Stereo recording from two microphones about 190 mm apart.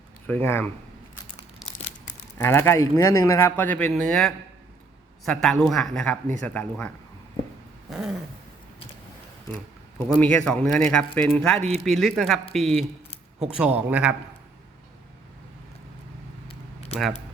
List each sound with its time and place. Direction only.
0.3 s speech: 10° left (ahead or behind)
2.4 s a man's voice: 10° left (ahead or behind)
7.9 s dog: centre (ahead or behind)
10.2 s a man's voice: 5° left (ahead or behind)
16.5 s a sound: 30° left (ahead or behind)